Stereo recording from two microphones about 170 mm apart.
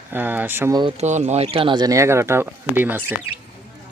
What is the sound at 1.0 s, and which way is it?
Speech, 40° right (ahead or behind).